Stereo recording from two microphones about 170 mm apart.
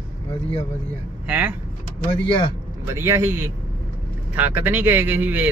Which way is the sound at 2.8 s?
15° right (ahead or behind).